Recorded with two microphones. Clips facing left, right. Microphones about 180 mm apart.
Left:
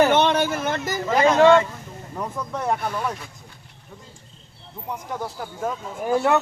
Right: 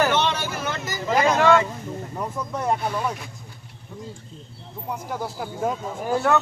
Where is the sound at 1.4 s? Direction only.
25° left (ahead or behind).